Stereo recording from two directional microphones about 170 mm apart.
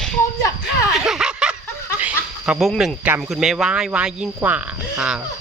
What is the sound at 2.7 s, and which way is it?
Speech, centre (ahead or behind).